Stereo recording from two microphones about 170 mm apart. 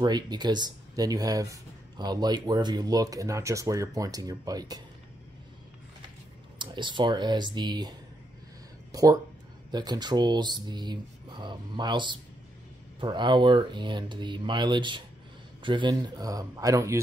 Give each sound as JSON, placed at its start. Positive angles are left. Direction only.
{"t": 0.0, "sound": "speech", "side_deg": -25}
{"t": 6.6, "sound": "speech", "side_deg": -25}
{"t": 8.9, "sound": "speech", "side_deg": -20}